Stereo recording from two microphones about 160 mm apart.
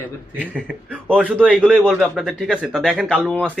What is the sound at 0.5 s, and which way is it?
A man's voice, 5° right (ahead or behind).